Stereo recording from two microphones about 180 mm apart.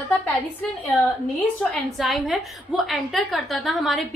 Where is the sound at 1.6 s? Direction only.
Centre (ahead or behind).